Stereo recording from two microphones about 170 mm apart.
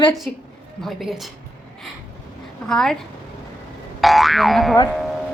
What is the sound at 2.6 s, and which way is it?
Speech, 5° left (ahead or behind).